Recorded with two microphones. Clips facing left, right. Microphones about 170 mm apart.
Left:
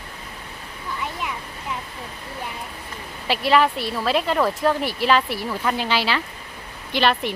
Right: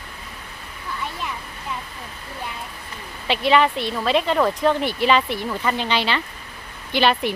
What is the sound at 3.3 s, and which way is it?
Speech, 5° left (ahead or behind).